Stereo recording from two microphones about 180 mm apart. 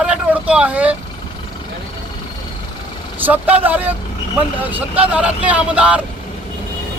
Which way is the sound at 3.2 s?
10° right (ahead or behind).